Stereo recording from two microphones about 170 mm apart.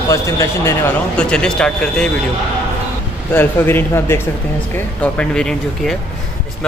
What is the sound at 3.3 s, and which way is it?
Speech, 10° left (ahead or behind).